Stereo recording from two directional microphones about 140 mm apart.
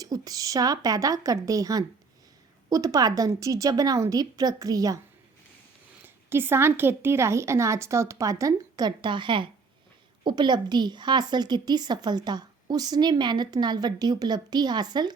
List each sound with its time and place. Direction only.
0.0 s a woman's voice: 25° right (ahead or behind)
6.3 s a woman's voice: 15° right (ahead or behind)